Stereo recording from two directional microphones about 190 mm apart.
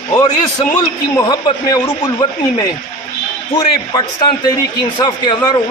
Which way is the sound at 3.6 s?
25° left (ahead or behind).